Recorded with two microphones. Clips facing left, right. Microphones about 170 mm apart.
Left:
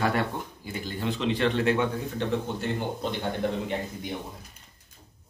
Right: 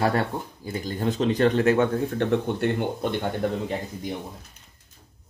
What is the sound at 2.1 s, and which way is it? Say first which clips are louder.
Speech: right 5 dB; 60° right (ahead or behind).